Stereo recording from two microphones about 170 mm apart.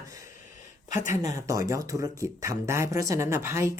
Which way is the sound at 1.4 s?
20° right (ahead or behind).